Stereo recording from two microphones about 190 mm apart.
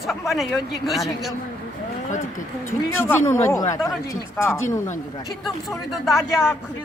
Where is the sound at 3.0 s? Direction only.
15° left (ahead or behind).